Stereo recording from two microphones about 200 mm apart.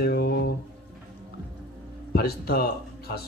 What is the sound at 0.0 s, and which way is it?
Guitar, 50° left (ahead or behind).